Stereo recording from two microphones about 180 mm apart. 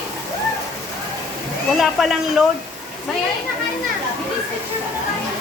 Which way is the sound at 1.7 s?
Centre (ahead or behind).